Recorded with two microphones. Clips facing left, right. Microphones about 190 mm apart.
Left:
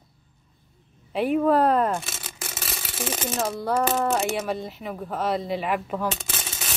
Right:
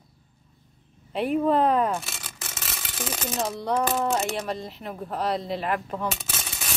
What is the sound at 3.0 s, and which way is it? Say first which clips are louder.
Speech: left 3 dB; 25° left (ahead or behind).